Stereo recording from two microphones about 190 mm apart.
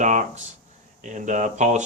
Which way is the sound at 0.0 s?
40° right (ahead or behind).